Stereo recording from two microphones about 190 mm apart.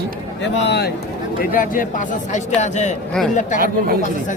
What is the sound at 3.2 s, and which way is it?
Speech, 5° left (ahead or behind).